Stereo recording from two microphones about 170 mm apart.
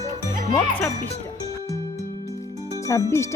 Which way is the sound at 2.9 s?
20° left (ahead or behind).